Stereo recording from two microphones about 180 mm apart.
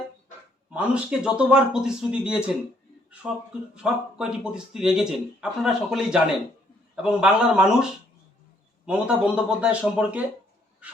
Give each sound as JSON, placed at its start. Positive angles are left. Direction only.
{"t": 0.7, "sound": "speech", "side_deg": -5}
{"t": 3.8, "sound": "speech", "side_deg": -5}
{"t": 8.9, "sound": "speech", "side_deg": -5}